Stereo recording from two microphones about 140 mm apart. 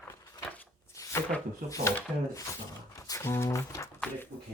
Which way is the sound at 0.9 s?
20° left (ahead or behind).